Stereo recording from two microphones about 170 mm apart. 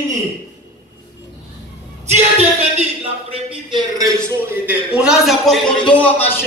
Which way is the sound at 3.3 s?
25° right (ahead or behind).